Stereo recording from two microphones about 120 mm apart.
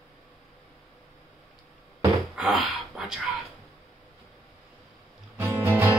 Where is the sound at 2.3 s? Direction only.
5° right (ahead or behind).